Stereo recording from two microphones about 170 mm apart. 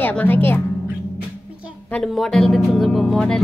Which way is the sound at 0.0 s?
10° left (ahead or behind).